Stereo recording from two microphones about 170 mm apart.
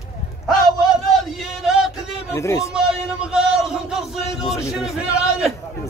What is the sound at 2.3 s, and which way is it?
Speech, 15° left (ahead or behind).